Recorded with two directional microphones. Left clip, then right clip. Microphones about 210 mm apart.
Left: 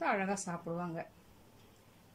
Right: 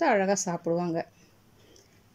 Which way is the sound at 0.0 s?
30° right (ahead or behind).